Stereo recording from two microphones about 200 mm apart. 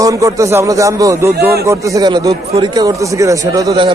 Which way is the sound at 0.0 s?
15° right (ahead or behind).